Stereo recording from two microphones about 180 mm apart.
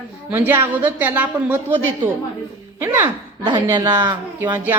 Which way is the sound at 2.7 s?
15° right (ahead or behind).